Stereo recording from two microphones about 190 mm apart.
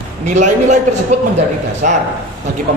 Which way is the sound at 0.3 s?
40° right (ahead or behind).